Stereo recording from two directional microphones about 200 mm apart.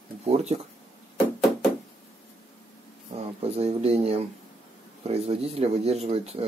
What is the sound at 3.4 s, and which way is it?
Speech, 30° right (ahead or behind).